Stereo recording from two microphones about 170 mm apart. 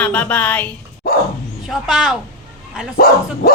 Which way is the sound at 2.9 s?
60° left (ahead or behind).